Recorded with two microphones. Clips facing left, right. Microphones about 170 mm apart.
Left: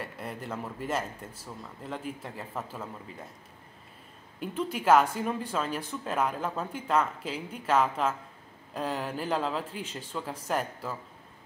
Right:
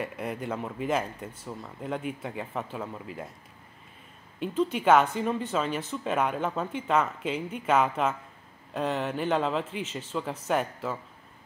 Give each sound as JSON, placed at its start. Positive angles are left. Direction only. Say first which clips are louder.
{"t": 0.2, "sound": "speech", "louder": "right 4 dB", "side_deg": -5}
{"t": 4.4, "sound": "speech", "louder": "right 5 dB", "side_deg": 5}
{"t": 8.7, "sound": "speech", "louder": "right 3 dB", "side_deg": 5}